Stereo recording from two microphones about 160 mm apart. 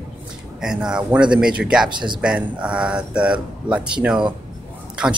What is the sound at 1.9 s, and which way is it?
Speech, 30° right (ahead or behind).